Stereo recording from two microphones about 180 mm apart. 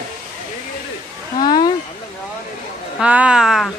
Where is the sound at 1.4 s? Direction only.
25° left (ahead or behind).